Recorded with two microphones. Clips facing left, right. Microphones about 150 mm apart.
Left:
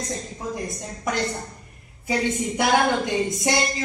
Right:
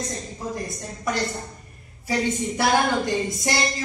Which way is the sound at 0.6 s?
20° left (ahead or behind).